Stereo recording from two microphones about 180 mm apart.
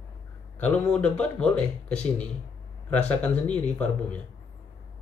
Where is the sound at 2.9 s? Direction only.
5° left (ahead or behind).